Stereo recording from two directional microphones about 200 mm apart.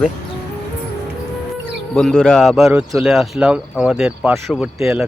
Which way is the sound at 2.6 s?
15° right (ahead or behind).